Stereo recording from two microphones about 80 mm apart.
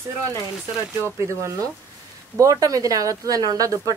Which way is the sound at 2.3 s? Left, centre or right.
Right.